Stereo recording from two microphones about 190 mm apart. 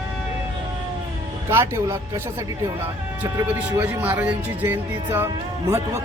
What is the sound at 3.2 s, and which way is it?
Speech, 10° right (ahead or behind).